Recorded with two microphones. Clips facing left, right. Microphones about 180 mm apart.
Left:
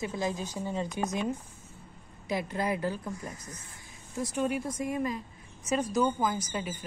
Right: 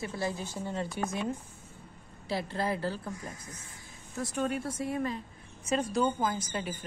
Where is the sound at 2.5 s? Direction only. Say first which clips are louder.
Left 1 dB; 15° left (ahead or behind).